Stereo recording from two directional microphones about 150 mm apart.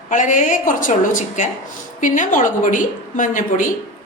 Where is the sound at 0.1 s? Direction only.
60° left (ahead or behind).